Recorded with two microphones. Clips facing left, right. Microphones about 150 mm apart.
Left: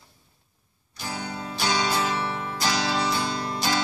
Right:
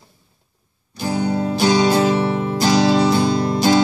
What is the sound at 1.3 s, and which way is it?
Music, 45° right (ahead or behind).